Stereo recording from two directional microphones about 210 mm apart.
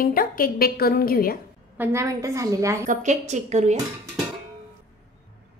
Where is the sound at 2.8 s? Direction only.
35° right (ahead or behind).